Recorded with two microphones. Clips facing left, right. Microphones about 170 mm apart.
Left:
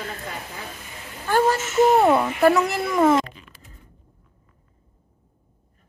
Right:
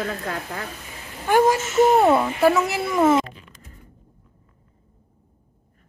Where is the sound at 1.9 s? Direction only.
Centre (ahead or behind).